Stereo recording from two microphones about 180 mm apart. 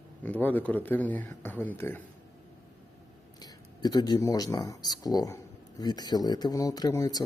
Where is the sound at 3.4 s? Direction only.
20° left (ahead or behind).